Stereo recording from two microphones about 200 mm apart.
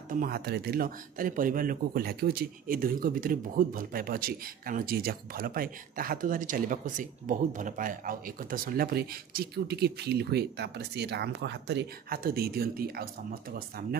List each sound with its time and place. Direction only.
0.1 s speech: 45° right (ahead or behind)